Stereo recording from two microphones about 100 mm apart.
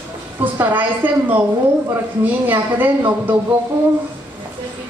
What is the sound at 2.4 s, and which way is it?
Speech, 20° right (ahead or behind).